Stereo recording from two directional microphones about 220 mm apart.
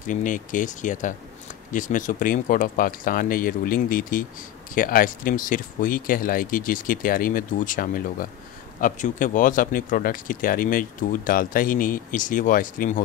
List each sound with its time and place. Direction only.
0.0 s speech: 35° left (ahead or behind)